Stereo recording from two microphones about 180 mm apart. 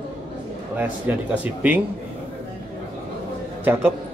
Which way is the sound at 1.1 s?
10° right (ahead or behind).